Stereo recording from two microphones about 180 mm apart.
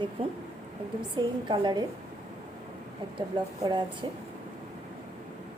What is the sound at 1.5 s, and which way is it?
Speech, 25° right (ahead or behind).